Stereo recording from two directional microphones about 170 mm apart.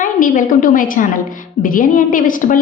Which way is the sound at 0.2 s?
50° left (ahead or behind).